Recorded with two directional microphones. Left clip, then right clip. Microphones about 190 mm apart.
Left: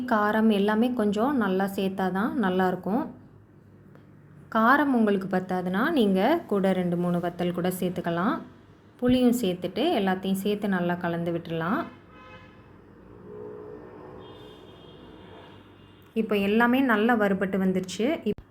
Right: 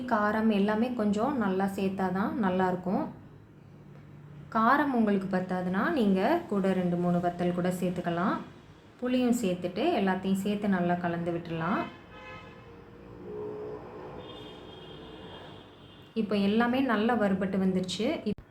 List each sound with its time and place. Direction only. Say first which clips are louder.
0.0 s a woman's voice: left 4 dB; 40° left (ahead or behind)
4.4 s a woman's voice: left 4 dB; 40° left (ahead or behind)
16.1 s a woman's voice: left 4 dB; 35° left (ahead or behind)